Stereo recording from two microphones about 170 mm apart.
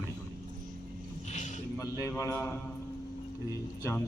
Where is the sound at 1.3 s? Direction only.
45° left (ahead or behind).